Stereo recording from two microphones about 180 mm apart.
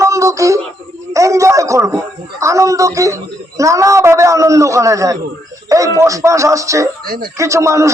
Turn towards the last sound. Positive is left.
turn(degrees=-15)  # may be behind; listen again after turning